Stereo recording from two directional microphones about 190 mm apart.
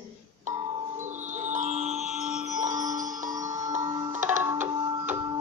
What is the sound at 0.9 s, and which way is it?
Music, 40° right (ahead or behind).